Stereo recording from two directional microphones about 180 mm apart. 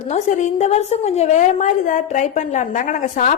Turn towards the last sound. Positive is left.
turn(degrees=45)  # may be behind; listen again after turning